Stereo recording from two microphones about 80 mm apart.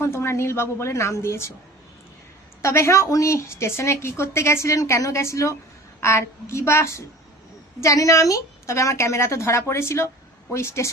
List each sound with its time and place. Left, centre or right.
0.0 s a woman's voice: left
2.6 s a woman's voice: left